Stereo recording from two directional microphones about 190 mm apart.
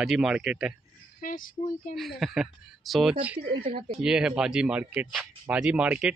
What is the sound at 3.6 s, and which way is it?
Speech, 30° right (ahead or behind).